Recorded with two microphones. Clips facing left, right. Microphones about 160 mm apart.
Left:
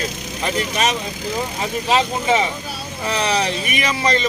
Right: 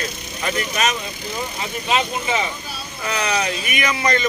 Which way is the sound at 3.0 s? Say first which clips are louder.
Left 2 dB; 30° left (ahead or behind).